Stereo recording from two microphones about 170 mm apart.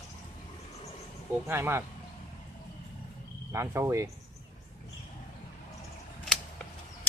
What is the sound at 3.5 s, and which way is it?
Speech, 15° right (ahead or behind).